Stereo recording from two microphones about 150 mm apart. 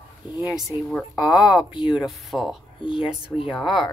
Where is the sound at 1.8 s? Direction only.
5° right (ahead or behind).